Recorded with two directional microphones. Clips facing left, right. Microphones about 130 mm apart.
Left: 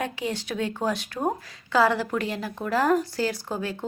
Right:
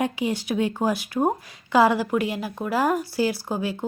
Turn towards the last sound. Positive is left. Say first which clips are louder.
# right 3 dB
turn(degrees=-10)  # may be behind; listen again after turning